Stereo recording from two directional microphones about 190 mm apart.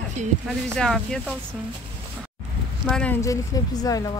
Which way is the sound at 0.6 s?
5° left (ahead or behind).